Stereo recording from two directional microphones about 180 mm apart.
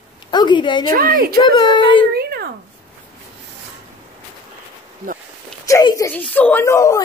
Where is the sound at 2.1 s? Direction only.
60° right (ahead or behind).